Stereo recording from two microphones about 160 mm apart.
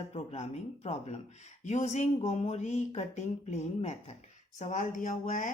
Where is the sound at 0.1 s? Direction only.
40° left (ahead or behind).